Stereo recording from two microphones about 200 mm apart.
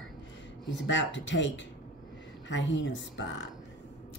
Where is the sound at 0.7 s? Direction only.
65° left (ahead or behind).